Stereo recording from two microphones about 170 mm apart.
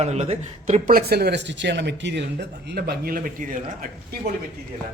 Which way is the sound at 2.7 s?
65° right (ahead or behind).